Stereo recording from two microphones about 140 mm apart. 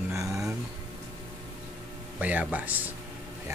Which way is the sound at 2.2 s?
10° right (ahead or behind).